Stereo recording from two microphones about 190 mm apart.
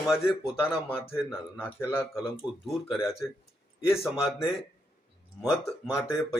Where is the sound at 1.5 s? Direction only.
15° left (ahead or behind).